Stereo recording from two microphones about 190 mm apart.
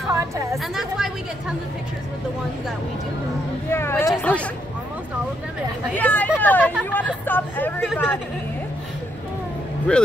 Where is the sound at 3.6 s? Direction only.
10° left (ahead or behind).